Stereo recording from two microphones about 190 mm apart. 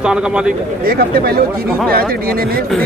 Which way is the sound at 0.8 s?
50° right (ahead or behind).